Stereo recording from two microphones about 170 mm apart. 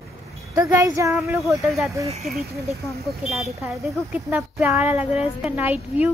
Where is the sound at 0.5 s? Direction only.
20° right (ahead or behind).